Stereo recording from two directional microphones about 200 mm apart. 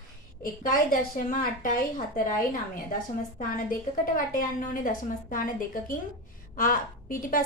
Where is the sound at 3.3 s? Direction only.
45° left (ahead or behind).